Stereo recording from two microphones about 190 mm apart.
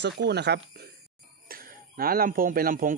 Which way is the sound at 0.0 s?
65° right (ahead or behind).